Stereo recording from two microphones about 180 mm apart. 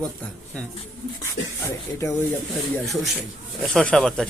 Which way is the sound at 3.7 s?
5° left (ahead or behind).